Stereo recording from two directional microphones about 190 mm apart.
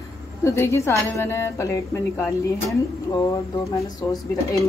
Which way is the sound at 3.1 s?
20° left (ahead or behind).